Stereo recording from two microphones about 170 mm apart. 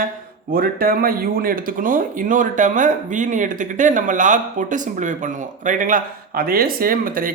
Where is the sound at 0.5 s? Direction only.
60° right (ahead or behind).